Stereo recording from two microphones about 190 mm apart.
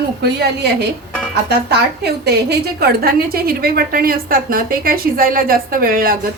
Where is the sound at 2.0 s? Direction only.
60° right (ahead or behind).